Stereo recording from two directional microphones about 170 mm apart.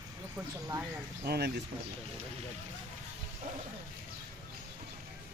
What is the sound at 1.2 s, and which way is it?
Speech, 70° right (ahead or behind).